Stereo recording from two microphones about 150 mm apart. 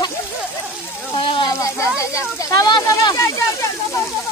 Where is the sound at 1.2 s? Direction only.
35° left (ahead or behind).